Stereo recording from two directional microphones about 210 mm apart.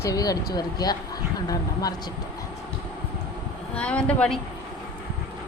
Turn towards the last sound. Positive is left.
turn(degrees=5)  # may be behind; listen again after turning